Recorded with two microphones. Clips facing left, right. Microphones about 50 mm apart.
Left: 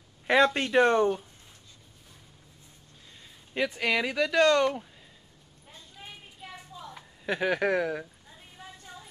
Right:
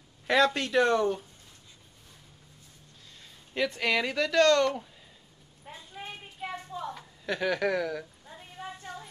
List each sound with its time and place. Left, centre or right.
0.3 s speech: left
3.5 s speech: centre
5.7 s a sound: right
7.0 s speech: centre